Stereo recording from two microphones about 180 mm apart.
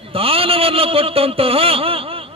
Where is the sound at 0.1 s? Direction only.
30° right (ahead or behind).